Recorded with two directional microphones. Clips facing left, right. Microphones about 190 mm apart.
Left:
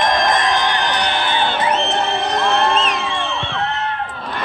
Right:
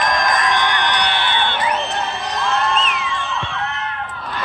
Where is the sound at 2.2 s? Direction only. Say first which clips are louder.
Left 5 dB; 55° left (ahead or behind).